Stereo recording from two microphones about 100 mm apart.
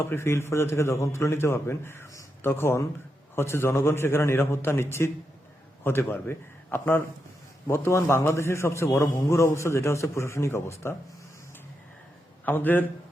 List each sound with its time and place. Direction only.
0.0 s a man's voice: 25° left (ahead or behind)
12.5 s a man's voice: 20° left (ahead or behind)